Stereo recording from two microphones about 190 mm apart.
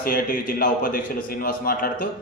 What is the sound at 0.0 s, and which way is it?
A man's voice, 45° left (ahead or behind).